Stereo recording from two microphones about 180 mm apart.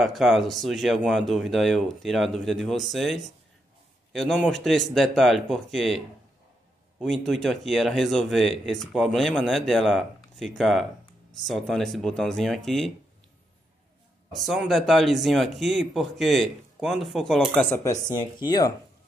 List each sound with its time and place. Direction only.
0.0 s speech: centre (ahead or behind)
14.3 s speech: centre (ahead or behind)
18.1 s speech: 20° left (ahead or behind)